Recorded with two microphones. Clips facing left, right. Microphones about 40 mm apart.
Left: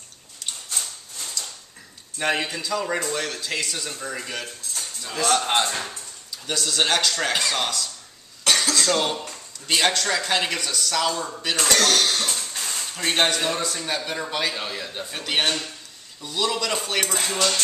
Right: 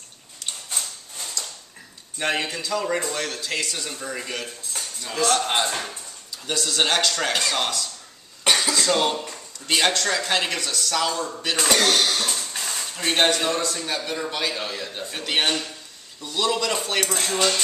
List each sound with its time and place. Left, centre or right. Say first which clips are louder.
1.4 s a sound: even; centre
2.1 s a man's voice: left 1 dB; centre
8.5 s cough: right 1 dB; centre
8.7 s a man's voice: right 1 dB; centre
11.5 s speech: even; centre
12.3 s cough: right 1 dB; centre
12.7 s a man's voice: even; centre